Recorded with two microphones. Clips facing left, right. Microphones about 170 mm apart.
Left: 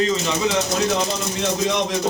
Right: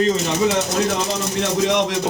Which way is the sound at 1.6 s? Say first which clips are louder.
Right 3 dB; 70° right (ahead or behind).